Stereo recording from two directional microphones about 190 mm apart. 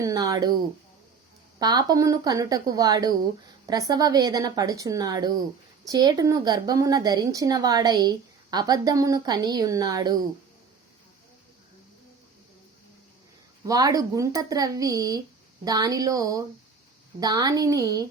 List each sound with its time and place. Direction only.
0.0 s speech: 15° right (ahead or behind)
1.5 s speech: 20° right (ahead or behind)
13.7 s speech: 20° right (ahead or behind)